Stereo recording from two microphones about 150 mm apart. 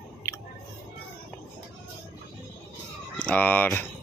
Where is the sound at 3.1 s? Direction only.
10° left (ahead or behind).